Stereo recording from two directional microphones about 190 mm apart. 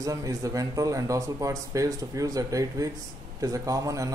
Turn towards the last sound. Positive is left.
turn(degrees=-15)  # may be behind; listen again after turning